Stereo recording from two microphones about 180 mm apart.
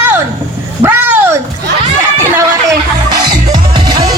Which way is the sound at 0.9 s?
10° right (ahead or behind).